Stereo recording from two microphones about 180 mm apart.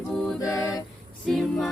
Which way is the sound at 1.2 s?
Centre (ahead or behind).